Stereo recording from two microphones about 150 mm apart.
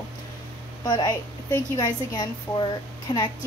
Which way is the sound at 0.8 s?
25° left (ahead or behind).